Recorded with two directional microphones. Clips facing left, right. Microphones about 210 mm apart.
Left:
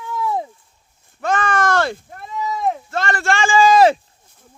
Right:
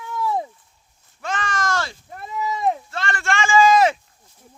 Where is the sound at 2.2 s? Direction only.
5° right (ahead or behind).